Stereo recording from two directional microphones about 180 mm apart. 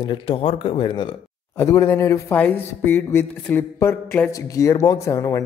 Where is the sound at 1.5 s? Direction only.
15° left (ahead or behind).